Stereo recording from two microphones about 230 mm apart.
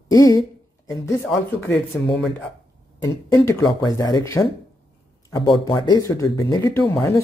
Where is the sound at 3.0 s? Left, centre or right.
Centre.